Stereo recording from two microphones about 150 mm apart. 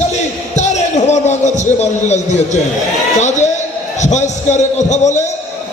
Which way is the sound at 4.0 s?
50° left (ahead or behind).